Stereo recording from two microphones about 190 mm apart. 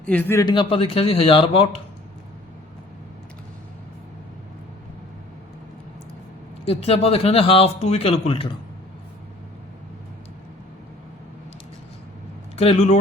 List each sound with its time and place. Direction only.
0.1 s speech: 10° left (ahead or behind)
0.4 s a man's voice: 25° left (ahead or behind)
6.7 s speech: 30° left (ahead or behind)
12.5 s speech: 35° left (ahead or behind)